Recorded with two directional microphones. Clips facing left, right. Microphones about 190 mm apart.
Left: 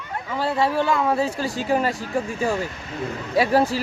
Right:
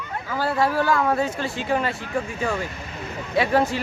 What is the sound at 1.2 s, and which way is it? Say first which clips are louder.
Speech: left 1 dB; 35° left (ahead or behind).